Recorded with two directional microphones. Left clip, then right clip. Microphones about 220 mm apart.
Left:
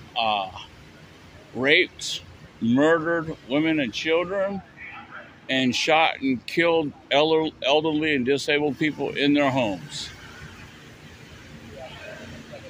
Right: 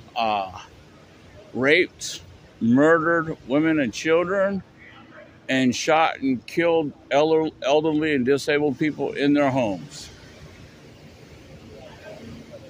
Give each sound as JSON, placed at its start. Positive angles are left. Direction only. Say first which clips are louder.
{"t": 0.1, "sound": "speech", "louder": "right 1 dB", "side_deg": -20}